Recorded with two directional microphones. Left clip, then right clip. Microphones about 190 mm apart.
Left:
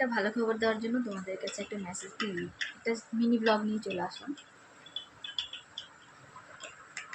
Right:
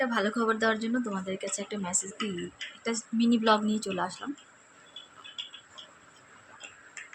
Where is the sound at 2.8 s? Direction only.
15° right (ahead or behind).